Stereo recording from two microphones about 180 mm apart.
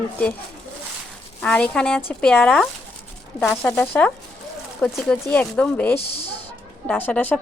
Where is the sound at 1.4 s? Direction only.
5° left (ahead or behind).